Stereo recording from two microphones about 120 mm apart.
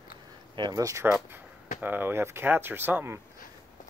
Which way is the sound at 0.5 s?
40° right (ahead or behind).